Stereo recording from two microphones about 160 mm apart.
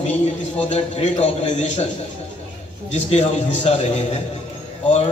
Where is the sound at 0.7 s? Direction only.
45° left (ahead or behind).